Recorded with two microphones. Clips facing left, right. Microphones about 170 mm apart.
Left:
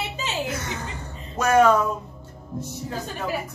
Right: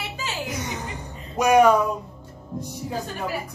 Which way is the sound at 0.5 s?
15° right (ahead or behind).